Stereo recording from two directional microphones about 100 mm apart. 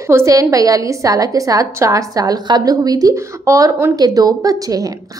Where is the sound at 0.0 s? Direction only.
30° right (ahead or behind).